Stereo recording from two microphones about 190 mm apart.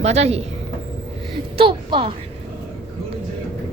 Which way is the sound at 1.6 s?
25° right (ahead or behind).